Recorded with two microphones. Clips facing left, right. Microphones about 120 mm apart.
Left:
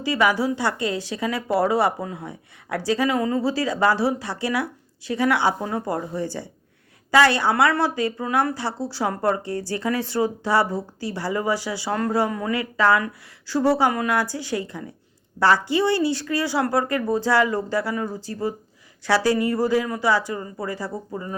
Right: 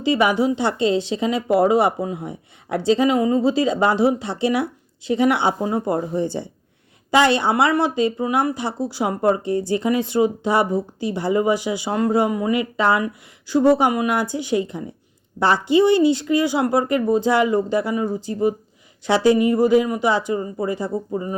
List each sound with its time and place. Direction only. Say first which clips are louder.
0.0 s a woman's voice: right 3 dB; 20° right (ahead or behind)